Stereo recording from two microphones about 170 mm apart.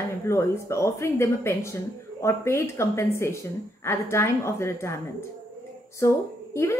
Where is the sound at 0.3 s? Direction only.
15° left (ahead or behind).